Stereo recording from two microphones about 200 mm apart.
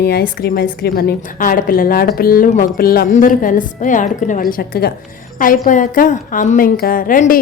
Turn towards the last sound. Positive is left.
turn(degrees=45)  # may be behind; listen again after turning